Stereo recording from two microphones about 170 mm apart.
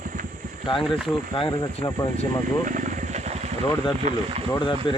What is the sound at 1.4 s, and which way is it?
Speech, 20° left (ahead or behind).